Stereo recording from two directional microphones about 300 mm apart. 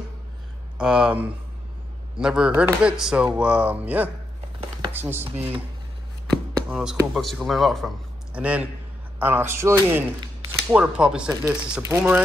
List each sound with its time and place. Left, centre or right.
0.7 s speech: centre
5.2 s speech: centre
6.7 s speech: centre